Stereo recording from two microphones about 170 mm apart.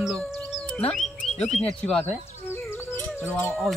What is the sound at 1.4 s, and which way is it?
Speech, 40° left (ahead or behind).